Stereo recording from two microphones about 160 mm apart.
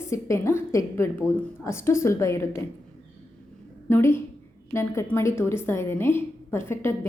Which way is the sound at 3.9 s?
15° left (ahead or behind).